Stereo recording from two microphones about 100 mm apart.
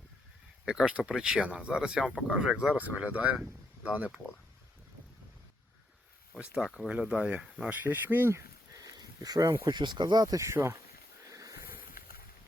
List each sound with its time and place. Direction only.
0.6 s speech: 5° right (ahead or behind)
3.3 s speech: 5° right (ahead or behind)
3.9 s speech: 15° right (ahead or behind)
6.3 s speech: 5° right (ahead or behind); by 9.6 s 35° right (ahead or behind)
9.6 s speech: 50° right (ahead or behind); by 10.8 s 30° right (ahead or behind)
11.3 s a sound: 35° right (ahead or behind)